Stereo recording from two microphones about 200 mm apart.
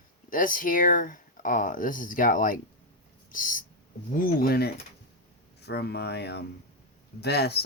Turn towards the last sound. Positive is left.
turn(degrees=55)  # may be behind; listen again after turning